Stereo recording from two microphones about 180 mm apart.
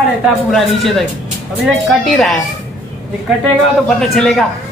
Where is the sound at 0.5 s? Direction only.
Centre (ahead or behind).